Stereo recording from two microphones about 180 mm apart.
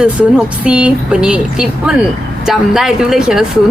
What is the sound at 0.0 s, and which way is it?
Speech, 5° right (ahead or behind).